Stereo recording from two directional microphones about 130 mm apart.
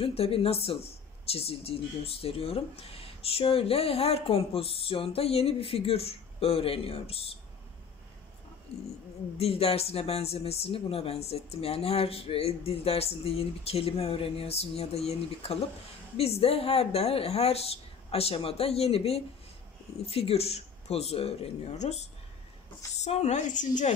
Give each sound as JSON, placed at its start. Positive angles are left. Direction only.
{"t": 0.0, "sound": "speech", "side_deg": 45}
{"t": 8.7, "sound": "speech", "side_deg": 50}
{"t": 23.0, "sound": "a woman's voice", "side_deg": 60}